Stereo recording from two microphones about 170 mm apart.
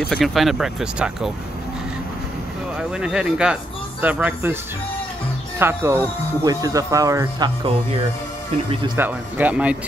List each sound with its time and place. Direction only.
0.1 s speech: centre (ahead or behind)
3.0 s speech: 5° right (ahead or behind)
5.6 s speech: 15° right (ahead or behind)
8.9 s speech: 10° right (ahead or behind)